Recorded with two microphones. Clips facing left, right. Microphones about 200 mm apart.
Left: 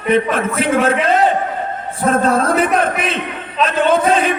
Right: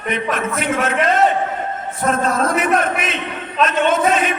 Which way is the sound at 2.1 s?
30° left (ahead or behind).